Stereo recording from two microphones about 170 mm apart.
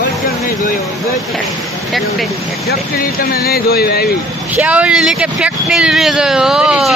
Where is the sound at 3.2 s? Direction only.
60° left (ahead or behind).